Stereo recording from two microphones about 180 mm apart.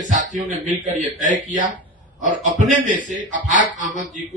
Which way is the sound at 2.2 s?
45° right (ahead or behind).